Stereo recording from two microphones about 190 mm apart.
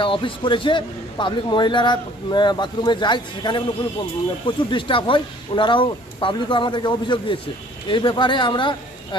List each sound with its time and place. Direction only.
0.0 s a man's voice: 25° left (ahead or behind)